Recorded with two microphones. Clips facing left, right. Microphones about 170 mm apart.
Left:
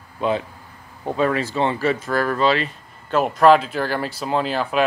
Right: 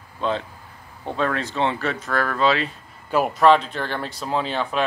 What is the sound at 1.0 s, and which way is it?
Speech, 5° left (ahead or behind).